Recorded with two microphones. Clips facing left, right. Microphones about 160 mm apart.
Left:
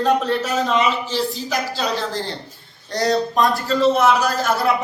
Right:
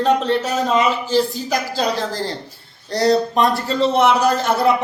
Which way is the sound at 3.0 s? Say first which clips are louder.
Right 2 dB; 30° right (ahead or behind).